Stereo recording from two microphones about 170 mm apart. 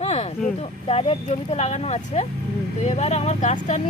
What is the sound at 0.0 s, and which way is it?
Speech, 40° left (ahead or behind).